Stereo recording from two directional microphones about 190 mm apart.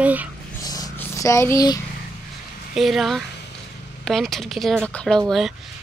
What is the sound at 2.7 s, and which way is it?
Speech, centre (ahead or behind).